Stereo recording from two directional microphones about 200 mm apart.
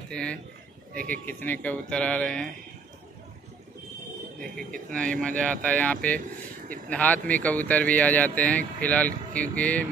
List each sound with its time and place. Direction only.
0.1 s speech: 5° left (ahead or behind)
4.6 s speech: 45° right (ahead or behind)
4.9 s speech: 5° left (ahead or behind)